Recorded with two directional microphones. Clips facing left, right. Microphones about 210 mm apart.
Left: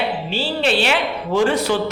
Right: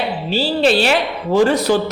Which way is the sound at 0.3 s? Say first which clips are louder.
Right 8 dB; 40° right (ahead or behind).